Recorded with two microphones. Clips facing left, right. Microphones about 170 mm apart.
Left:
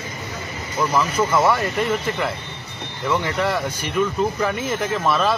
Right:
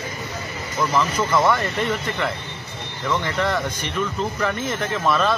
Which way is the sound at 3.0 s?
10° left (ahead or behind).